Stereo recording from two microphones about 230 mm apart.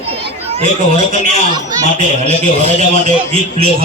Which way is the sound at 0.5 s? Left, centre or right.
Right.